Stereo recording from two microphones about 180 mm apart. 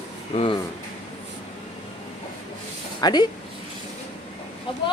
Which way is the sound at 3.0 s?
25° left (ahead or behind).